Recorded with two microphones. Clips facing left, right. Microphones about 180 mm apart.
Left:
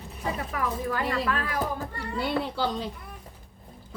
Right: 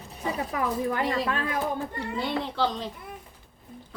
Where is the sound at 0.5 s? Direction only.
20° right (ahead or behind).